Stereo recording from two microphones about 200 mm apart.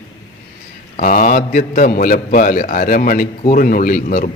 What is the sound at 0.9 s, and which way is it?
A man's voice, 40° left (ahead or behind).